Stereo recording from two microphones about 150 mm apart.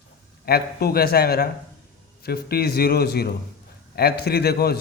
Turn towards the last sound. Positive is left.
turn(degrees=90)